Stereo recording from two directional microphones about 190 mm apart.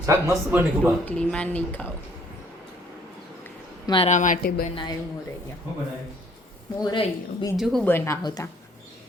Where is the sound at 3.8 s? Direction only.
25° left (ahead or behind).